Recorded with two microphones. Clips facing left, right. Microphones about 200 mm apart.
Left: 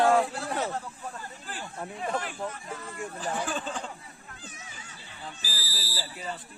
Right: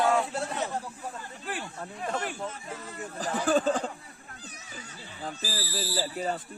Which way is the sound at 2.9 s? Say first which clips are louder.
Right 1 dB; 40° right (ahead or behind).